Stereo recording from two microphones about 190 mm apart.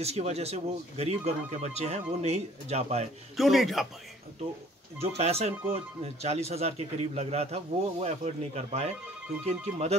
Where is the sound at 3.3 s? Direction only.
Centre (ahead or behind).